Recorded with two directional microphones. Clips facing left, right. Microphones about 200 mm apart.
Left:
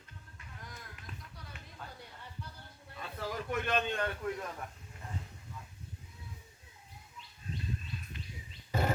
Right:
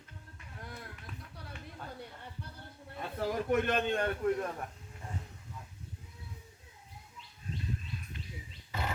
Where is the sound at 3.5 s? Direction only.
50° right (ahead or behind).